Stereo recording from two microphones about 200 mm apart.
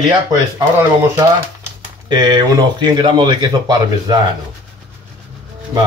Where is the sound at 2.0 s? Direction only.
20° right (ahead or behind).